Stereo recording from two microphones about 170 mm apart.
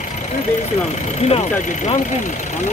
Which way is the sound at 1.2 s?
40° left (ahead or behind).